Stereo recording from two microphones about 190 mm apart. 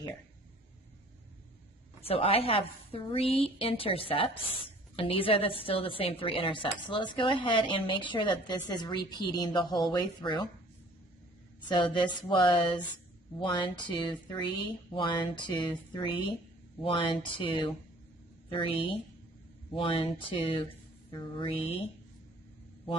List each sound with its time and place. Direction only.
2.0 s a woman's voice: 30° left (ahead or behind)
11.7 s a woman's voice: 25° left (ahead or behind)